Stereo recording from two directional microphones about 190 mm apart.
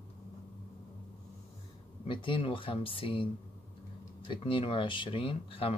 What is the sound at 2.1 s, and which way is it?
Speech, 25° left (ahead or behind).